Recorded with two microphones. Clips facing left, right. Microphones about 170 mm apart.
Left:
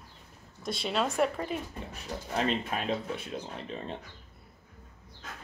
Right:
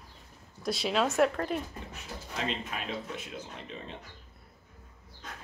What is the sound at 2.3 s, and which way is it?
Speech, 35° left (ahead or behind).